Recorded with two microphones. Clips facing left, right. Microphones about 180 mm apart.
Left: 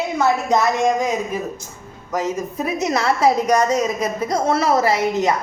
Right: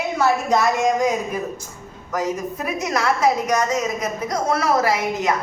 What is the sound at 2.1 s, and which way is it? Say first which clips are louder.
A woman's voice: left 1 dB; 25° left (ahead or behind).